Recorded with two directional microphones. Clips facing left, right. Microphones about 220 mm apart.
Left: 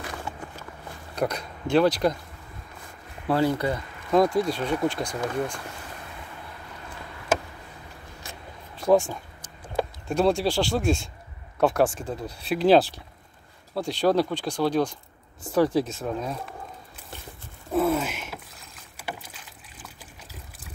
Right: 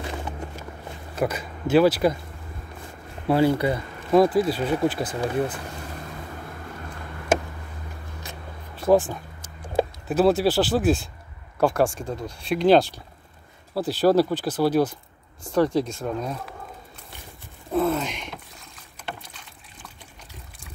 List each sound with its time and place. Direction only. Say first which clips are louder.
0.0 s a sound: right 3 dB; 20° right (ahead or behind)
1.1 s speech: right 2 dB; 5° right (ahead or behind)
3.3 s speech: right 3 dB; 10° right (ahead or behind)
8.8 s speech: right 1 dB; centre (ahead or behind)
15.5 s speech: right 1 dB; 5° left (ahead or behind)
17.6 s boat: even; 5° left (ahead or behind)